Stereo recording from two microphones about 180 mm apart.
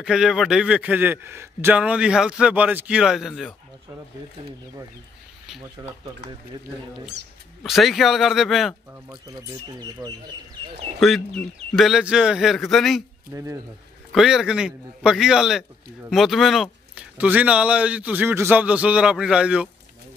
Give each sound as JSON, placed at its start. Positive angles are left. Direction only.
{"t": 0.0, "sound": "a man's voice", "side_deg": -5}
{"t": 5.8, "sound": "speech", "side_deg": -20}
{"t": 7.6, "sound": "a man's voice", "side_deg": 0}
{"t": 9.8, "sound": "speech", "side_deg": -25}
{"t": 11.0, "sound": "a man's voice", "side_deg": 0}
{"t": 13.3, "sound": "speech", "side_deg": -15}
{"t": 14.1, "sound": "a man's voice", "side_deg": -5}